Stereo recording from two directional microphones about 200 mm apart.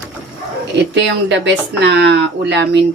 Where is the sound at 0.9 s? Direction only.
60° right (ahead or behind).